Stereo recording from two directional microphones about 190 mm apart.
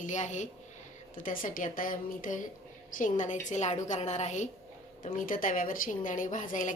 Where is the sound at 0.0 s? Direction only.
40° left (ahead or behind).